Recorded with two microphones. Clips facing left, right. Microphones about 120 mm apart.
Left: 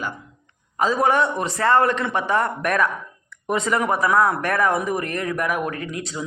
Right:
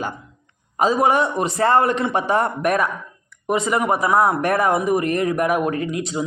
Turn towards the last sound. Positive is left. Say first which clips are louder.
# right 6 dB
turn(degrees=-20)  # may be behind; listen again after turning